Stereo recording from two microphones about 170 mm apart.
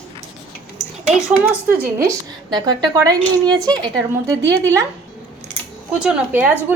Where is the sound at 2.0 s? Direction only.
25° right (ahead or behind).